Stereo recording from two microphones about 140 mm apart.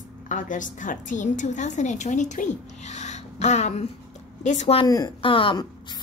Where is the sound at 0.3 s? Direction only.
65° left (ahead or behind).